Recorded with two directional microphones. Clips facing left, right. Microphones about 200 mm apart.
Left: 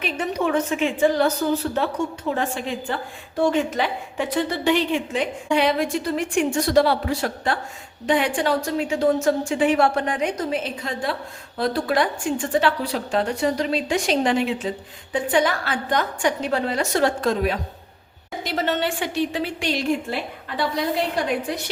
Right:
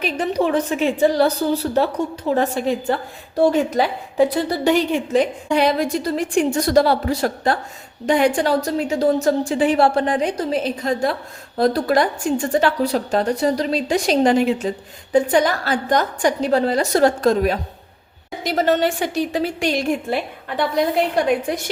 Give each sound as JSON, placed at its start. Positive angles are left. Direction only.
{"t": 0.0, "sound": "a woman's voice", "side_deg": -35}